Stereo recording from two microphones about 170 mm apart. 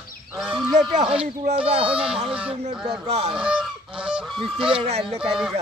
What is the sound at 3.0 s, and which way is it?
Speech, 35° right (ahead or behind).